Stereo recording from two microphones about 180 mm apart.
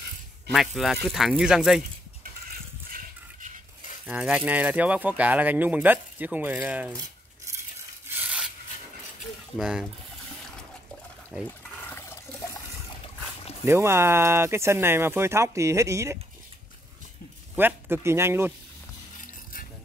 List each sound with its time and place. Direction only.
0.5 s speech: centre (ahead or behind)
2.9 s a sound: 50° right (ahead or behind)
4.1 s speech: 5° right (ahead or behind)
8.2 s filing: 5° right (ahead or behind)
9.6 s speech: 5° right (ahead or behind)
11.4 s water: 10° left (ahead or behind)
13.7 s speech: 15° right (ahead or behind)
17.6 s speech: 10° right (ahead or behind)